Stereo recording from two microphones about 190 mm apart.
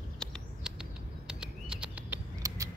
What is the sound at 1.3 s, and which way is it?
Bird, 5° right (ahead or behind).